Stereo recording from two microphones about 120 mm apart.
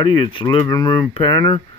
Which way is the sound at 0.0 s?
40° left (ahead or behind).